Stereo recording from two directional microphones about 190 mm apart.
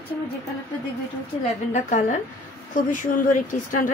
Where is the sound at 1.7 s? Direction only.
40° left (ahead or behind).